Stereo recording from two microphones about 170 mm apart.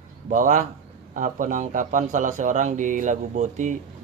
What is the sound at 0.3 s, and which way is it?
Speech, 50° right (ahead or behind).